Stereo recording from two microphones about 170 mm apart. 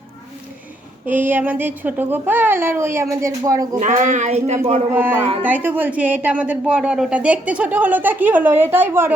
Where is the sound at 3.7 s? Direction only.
50° right (ahead or behind).